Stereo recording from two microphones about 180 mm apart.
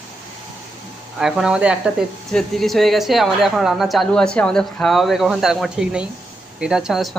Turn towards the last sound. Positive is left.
turn(degrees=0)  # may be behind; listen again after turning